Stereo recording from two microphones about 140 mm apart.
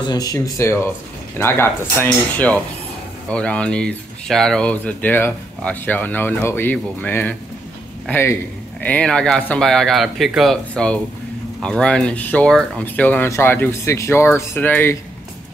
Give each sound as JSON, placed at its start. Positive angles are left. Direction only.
{"t": 0.0, "sound": "speech", "side_deg": 30}